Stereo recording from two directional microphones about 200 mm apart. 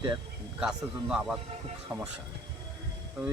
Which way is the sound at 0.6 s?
5° right (ahead or behind).